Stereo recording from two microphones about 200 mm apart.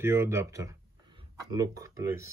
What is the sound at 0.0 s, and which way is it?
Speech, 10° right (ahead or behind).